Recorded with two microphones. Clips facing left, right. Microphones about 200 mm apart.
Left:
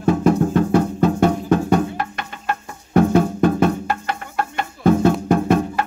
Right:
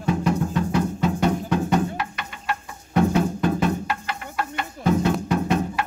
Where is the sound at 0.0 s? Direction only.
50° left (ahead or behind).